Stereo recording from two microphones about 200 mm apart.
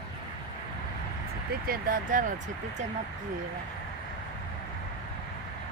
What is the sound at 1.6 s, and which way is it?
Speech, 45° right (ahead or behind).